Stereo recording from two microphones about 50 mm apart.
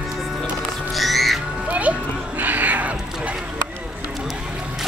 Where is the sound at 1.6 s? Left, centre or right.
Right.